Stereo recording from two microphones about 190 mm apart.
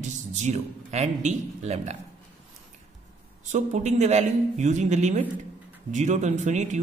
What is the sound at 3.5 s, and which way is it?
A man's voice, 35° right (ahead or behind).